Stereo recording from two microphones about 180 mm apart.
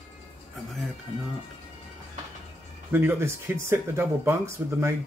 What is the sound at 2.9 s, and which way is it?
Speech, 15° right (ahead or behind).